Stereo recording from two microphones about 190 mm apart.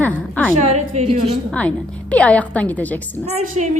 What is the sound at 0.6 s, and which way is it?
Speech, 35° right (ahead or behind).